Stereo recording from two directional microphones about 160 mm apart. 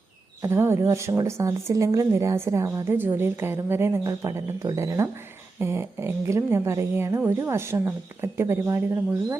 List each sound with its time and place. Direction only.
0.4 s speech: 15° right (ahead or behind)